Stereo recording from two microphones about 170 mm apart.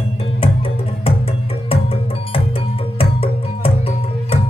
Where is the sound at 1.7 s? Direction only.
35° left (ahead or behind).